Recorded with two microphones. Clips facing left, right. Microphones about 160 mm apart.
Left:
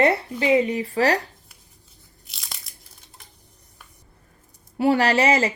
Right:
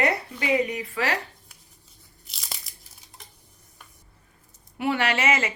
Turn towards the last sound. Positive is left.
turn(degrees=35)  # may be behind; listen again after turning